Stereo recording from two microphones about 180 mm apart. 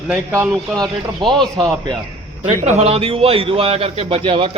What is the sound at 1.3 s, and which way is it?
Speech, 25° right (ahead or behind).